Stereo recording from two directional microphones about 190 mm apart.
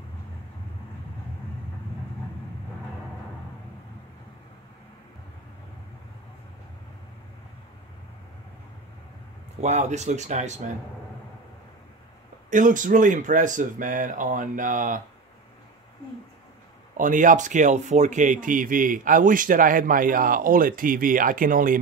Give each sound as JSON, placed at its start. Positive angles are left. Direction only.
{"t": 9.6, "sound": "speech", "side_deg": -40}
{"t": 12.4, "sound": "speech", "side_deg": -45}
{"t": 16.9, "sound": "speech", "side_deg": -45}